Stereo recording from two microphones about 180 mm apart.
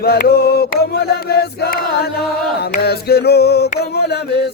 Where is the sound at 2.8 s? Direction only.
60° left (ahead or behind).